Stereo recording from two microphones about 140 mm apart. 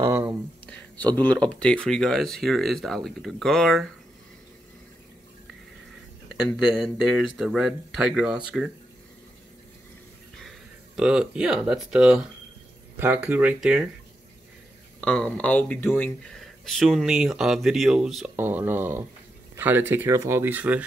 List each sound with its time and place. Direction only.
0.7 s speech: 10° left (ahead or behind)
6.5 s speech: centre (ahead or behind)
11.0 s speech: 5° right (ahead or behind)
15.0 s speech: 5° left (ahead or behind)
18.3 s speech: 15° right (ahead or behind)